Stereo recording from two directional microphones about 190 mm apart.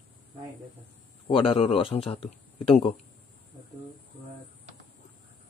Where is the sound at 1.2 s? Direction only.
30° left (ahead or behind).